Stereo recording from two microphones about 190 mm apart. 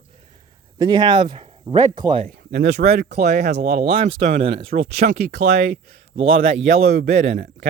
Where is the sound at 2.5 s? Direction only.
60° right (ahead or behind).